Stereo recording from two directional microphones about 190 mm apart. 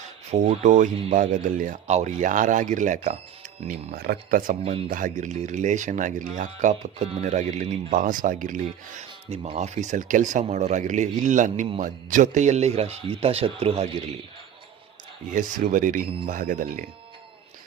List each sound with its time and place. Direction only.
0.3 s speech: 35° right (ahead or behind)
3.7 s speech: 55° right (ahead or behind); by 14.0 s 35° right (ahead or behind)
15.3 s speech: 45° right (ahead or behind)